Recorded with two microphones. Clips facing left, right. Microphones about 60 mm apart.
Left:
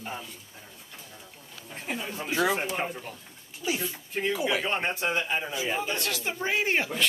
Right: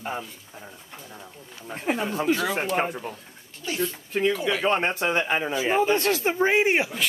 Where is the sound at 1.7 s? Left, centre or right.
Right.